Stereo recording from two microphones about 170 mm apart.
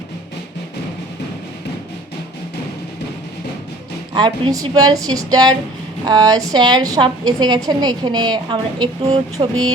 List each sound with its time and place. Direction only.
4.1 s speech: 25° right (ahead or behind)